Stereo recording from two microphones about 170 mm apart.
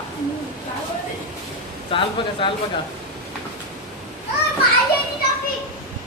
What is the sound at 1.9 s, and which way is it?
Speech, 30° left (ahead or behind).